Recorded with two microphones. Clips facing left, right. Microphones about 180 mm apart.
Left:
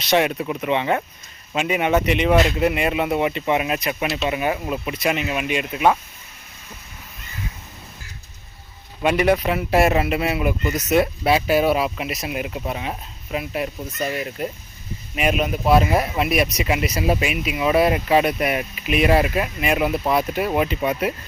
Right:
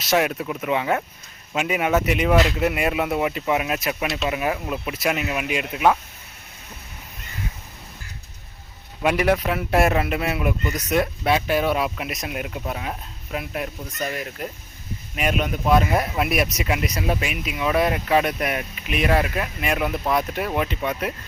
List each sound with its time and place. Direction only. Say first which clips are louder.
0.0 s a man's voice: left 2 dB; centre (ahead or behind)
9.0 s a man's voice: left 2 dB; centre (ahead or behind)